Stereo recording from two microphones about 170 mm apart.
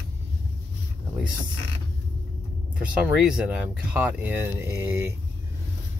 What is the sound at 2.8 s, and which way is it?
Speech, 10° right (ahead or behind).